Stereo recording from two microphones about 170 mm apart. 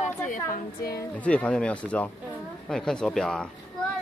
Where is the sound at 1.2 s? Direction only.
10° left (ahead or behind).